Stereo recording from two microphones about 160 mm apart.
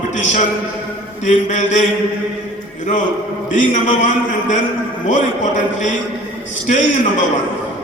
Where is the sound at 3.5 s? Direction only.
50° left (ahead or behind).